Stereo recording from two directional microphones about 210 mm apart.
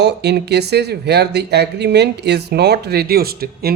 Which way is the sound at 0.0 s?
50° right (ahead or behind).